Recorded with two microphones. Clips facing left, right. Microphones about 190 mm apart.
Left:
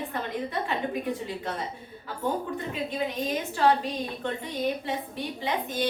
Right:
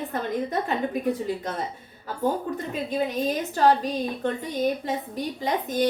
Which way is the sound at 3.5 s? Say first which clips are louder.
Right 3 dB; 40° right (ahead or behind).